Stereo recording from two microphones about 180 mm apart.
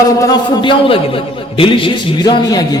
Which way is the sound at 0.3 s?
25° left (ahead or behind).